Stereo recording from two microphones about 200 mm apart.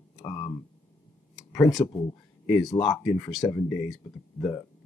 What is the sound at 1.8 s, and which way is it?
Speech, 20° left (ahead or behind).